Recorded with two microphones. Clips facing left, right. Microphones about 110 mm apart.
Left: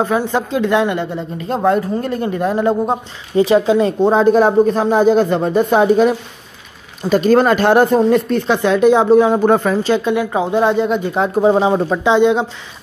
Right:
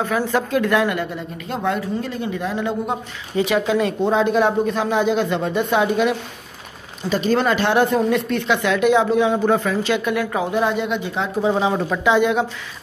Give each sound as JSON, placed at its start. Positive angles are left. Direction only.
{"t": 0.0, "sound": "speech", "side_deg": 25}
{"t": 10.1, "sound": "speech", "side_deg": 25}
{"t": 11.1, "sound": "speech", "side_deg": 45}